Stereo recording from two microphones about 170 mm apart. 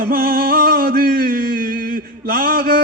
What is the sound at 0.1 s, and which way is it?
Music, 60° right (ahead or behind).